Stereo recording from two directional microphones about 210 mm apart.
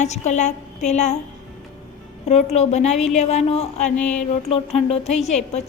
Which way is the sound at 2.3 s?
30° left (ahead or behind).